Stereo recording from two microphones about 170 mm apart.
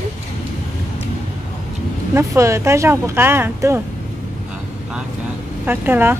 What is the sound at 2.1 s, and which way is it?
A woman's voice, 15° right (ahead or behind).